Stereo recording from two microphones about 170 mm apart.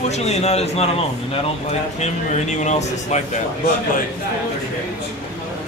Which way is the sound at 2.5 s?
45° left (ahead or behind).